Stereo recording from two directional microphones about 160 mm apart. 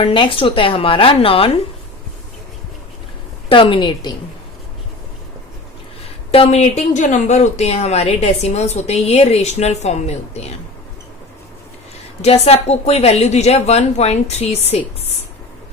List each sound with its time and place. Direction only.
0.0 s a woman's voice: 35° left (ahead or behind)
3.5 s a woman's voice: 30° left (ahead or behind)
6.3 s speech: 40° left (ahead or behind)
12.2 s a woman's voice: 40° left (ahead or behind)